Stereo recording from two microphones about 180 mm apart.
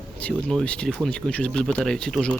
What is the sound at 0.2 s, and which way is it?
Speech, 5° left (ahead or behind).